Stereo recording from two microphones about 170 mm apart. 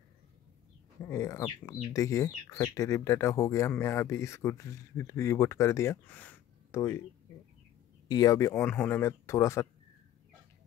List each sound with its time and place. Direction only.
1.0 s speech: 15° left (ahead or behind)
8.1 s speech: 20° left (ahead or behind)